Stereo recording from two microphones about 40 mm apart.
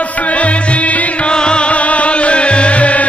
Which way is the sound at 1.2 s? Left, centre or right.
Left.